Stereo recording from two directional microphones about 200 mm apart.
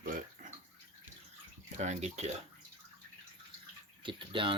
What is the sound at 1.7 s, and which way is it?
Speech, 35° right (ahead or behind).